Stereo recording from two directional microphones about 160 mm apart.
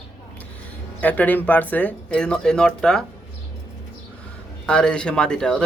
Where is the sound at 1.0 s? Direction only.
10° left (ahead or behind).